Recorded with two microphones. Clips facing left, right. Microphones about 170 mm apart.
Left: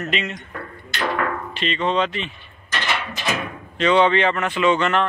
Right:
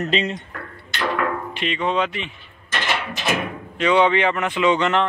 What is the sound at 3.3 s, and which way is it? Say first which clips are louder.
Speech: right 1 dB; 10° right (ahead or behind).